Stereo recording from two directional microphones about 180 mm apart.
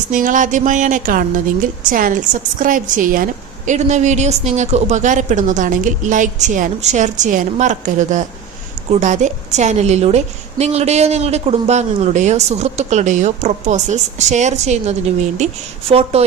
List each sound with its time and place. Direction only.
0.1 s a woman's voice: 45° right (ahead or behind)